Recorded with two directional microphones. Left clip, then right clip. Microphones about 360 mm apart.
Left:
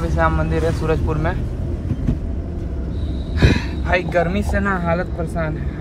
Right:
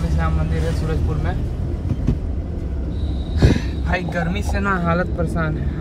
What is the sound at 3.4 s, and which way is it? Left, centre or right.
Speech, centre.